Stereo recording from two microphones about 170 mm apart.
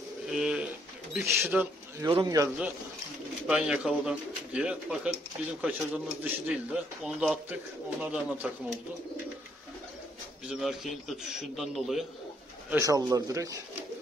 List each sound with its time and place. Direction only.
0.3 s pigeon: 5° right (ahead or behind)
1.2 s speech: 15° right (ahead or behind)
3.4 s speech: 5° right (ahead or behind)
10.5 s speech: centre (ahead or behind)
12.7 s speech: 20° right (ahead or behind)